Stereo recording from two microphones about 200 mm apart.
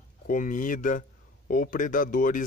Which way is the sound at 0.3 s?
40° left (ahead or behind).